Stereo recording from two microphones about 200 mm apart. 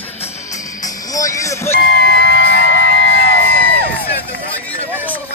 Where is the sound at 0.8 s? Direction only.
15° left (ahead or behind).